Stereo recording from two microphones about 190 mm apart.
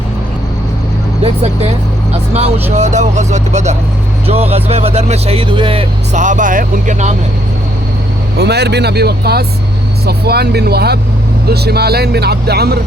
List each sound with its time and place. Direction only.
2.3 s speech: 35° right (ahead or behind)
6.1 s speech: 40° right (ahead or behind)
8.4 s speech: 60° right (ahead or behind)